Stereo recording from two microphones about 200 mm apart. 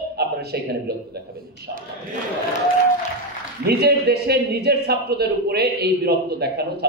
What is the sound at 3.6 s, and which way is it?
Speech, 55° right (ahead or behind).